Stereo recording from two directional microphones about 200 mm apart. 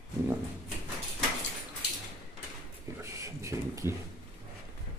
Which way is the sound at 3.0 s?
15° right (ahead or behind).